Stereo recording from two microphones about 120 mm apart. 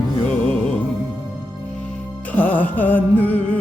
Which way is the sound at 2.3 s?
15° left (ahead or behind).